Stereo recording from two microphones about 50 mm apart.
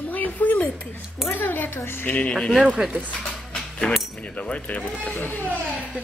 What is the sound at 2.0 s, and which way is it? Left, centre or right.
Speech, left.